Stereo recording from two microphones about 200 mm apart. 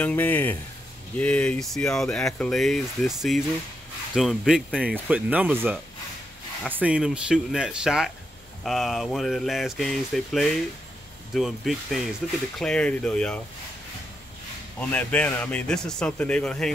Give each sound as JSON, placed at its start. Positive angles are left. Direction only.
{"t": 0.0, "sound": "speech", "side_deg": 10}
{"t": 14.8, "sound": "speech", "side_deg": 5}